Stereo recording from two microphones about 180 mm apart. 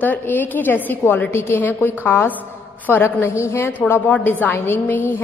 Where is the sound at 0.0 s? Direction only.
10° left (ahead or behind).